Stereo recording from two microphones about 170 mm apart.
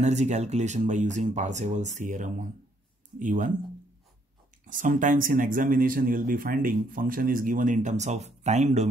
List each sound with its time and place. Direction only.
0.0 s speech: 40° right (ahead or behind)
4.6 s speech: 50° right (ahead or behind)